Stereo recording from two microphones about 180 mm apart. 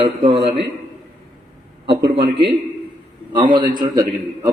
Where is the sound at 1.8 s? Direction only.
30° right (ahead or behind).